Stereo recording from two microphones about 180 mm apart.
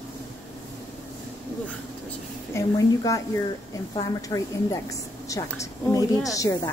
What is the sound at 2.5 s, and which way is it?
A woman's voice, 20° left (ahead or behind).